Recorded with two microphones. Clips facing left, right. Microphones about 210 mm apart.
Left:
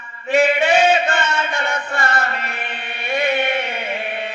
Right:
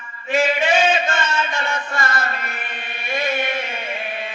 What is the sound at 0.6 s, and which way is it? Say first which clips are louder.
Chant: left 3 dB; 35° left (ahead or behind).